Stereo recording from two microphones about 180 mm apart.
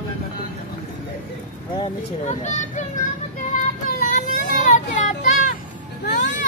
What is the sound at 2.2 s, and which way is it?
Speech, 40° left (ahead or behind).